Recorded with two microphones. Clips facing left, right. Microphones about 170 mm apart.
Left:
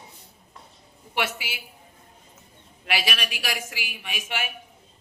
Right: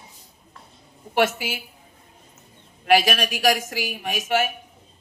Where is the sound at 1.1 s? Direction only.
45° right (ahead or behind).